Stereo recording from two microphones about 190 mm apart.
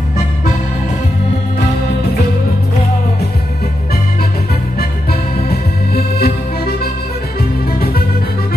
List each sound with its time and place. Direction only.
5.5 s music: 55° left (ahead or behind)